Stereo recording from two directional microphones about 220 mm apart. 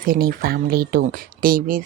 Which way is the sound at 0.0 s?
40° right (ahead or behind).